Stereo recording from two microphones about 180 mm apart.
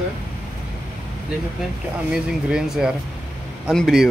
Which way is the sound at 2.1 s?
5° right (ahead or behind).